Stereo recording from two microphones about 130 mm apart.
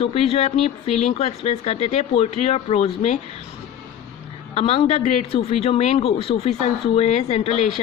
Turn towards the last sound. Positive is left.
turn(degrees=55)  # may be behind; listen again after turning